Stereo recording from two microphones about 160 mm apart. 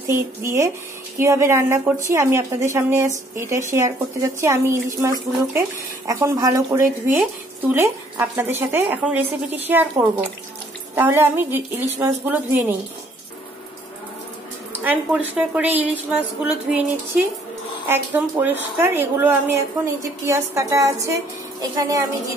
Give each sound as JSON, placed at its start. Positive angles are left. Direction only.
{"t": 0.0, "sound": "a woman's voice", "side_deg": -15}
{"t": 14.7, "sound": "a woman's voice", "side_deg": -10}